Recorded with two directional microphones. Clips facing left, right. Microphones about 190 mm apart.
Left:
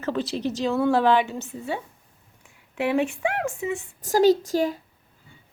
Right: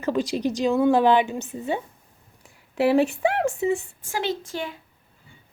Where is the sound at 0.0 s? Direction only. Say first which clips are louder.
Right 3 dB; 15° right (ahead or behind).